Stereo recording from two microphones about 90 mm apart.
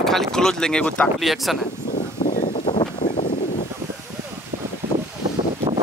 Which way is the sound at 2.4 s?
60° left (ahead or behind).